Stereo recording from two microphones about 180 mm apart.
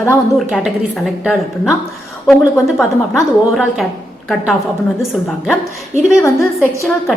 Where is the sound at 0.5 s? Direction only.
Centre (ahead or behind).